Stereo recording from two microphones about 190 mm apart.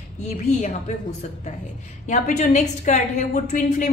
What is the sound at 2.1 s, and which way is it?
A woman's voice, 40° left (ahead or behind).